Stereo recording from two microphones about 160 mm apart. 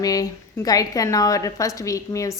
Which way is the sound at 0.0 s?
20° left (ahead or behind).